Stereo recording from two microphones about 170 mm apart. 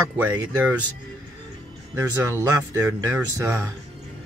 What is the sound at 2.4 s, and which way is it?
Speech, 15° right (ahead or behind).